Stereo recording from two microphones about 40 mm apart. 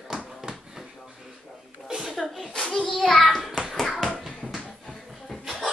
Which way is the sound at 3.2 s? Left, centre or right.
Centre.